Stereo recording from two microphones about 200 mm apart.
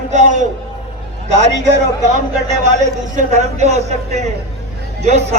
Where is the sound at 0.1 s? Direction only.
35° right (ahead or behind).